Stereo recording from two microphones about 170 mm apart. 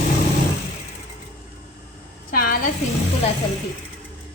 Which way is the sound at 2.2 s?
60° left (ahead or behind).